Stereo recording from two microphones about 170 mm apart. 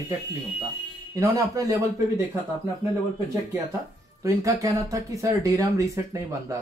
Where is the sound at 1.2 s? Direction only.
20° right (ahead or behind).